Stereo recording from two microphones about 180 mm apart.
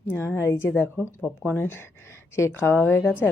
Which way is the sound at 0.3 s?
15° left (ahead or behind).